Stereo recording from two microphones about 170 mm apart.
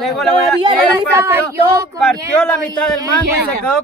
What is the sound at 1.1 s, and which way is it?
Speech, 15° right (ahead or behind).